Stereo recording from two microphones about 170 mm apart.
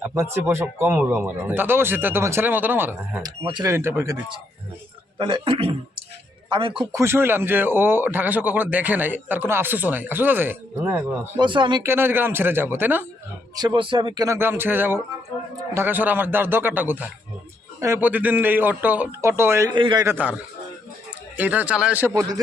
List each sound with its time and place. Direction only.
0.0 s speech: 15° right (ahead or behind)
3.2 s speech: 25° right (ahead or behind)
6.9 s speech: 15° right (ahead or behind)
11.3 s speech: 30° right (ahead or behind)
11.9 s speech: 15° right (ahead or behind)
13.6 s speech: 25° right (ahead or behind)
19.7 s speech: 25° right (ahead or behind)
20.1 s speech: 10° right (ahead or behind)